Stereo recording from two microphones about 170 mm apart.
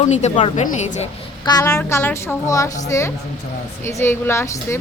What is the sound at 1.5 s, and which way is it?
Speech, 20° left (ahead or behind).